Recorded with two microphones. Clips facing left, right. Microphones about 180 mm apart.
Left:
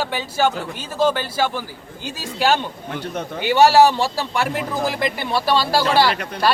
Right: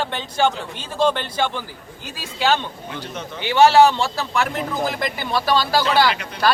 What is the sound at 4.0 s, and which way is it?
Speech, 35° left (ahead or behind).